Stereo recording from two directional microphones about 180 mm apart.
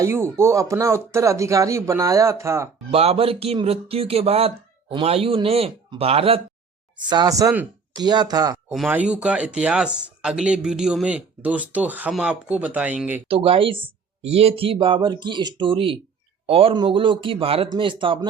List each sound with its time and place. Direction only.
0.0 s speech: 15° right (ahead or behind)
2.9 s speech: 35° right (ahead or behind)
7.1 s speech: 20° right (ahead or behind)
8.9 s speech: 5° right (ahead or behind)
13.2 s speech: 30° right (ahead or behind)